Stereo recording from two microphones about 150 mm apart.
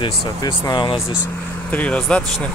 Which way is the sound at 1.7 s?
10° left (ahead or behind).